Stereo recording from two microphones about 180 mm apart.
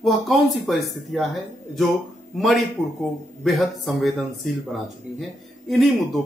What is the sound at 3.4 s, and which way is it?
Speech, centre (ahead or behind).